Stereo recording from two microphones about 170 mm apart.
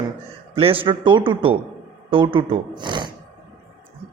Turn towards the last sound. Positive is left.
turn(degrees=-25)  # may be behind; listen again after turning